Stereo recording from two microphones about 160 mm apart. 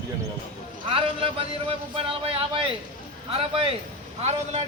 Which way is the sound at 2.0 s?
35° right (ahead or behind).